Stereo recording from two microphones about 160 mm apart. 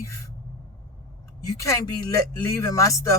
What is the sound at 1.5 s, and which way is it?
Speech, 20° left (ahead or behind).